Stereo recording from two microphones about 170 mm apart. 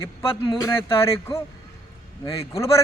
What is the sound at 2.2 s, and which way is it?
Speech, 35° left (ahead or behind).